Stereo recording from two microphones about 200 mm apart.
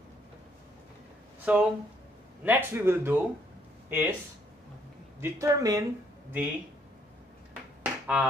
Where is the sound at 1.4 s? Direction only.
10° right (ahead or behind).